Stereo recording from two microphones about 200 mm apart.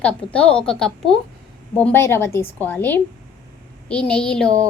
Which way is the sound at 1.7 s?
10° left (ahead or behind).